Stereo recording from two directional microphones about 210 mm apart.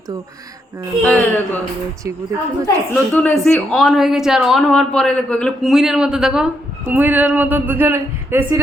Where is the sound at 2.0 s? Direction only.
15° right (ahead or behind).